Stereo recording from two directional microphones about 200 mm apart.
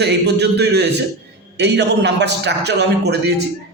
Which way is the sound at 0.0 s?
55° right (ahead or behind).